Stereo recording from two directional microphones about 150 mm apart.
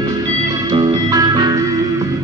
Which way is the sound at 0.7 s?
30° right (ahead or behind).